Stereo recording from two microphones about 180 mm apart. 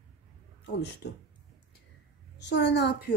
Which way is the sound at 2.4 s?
75° left (ahead or behind).